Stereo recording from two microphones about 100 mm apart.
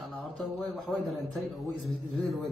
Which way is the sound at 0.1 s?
Centre (ahead or behind).